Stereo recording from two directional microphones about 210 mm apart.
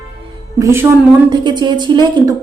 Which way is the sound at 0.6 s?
10° right (ahead or behind).